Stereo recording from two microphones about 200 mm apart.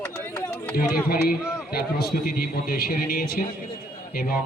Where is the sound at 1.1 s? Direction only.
50° left (ahead or behind).